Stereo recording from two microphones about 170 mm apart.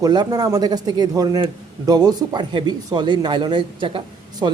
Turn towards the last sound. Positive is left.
turn(degrees=-25)  # may be behind; listen again after turning